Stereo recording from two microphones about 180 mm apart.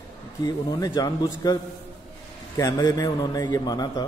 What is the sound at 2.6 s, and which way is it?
A man's voice, 20° left (ahead or behind).